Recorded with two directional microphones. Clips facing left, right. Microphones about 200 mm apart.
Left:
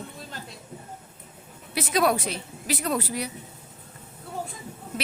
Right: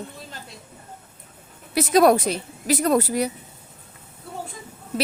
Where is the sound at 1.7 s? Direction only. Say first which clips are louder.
Right 7 dB; 40° right (ahead or behind).